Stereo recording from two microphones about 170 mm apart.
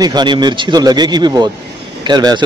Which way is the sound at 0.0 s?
25° right (ahead or behind).